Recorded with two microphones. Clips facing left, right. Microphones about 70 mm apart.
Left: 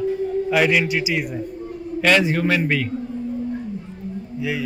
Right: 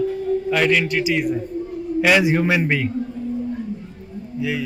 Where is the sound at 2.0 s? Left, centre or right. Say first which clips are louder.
Right 1 dB; centre.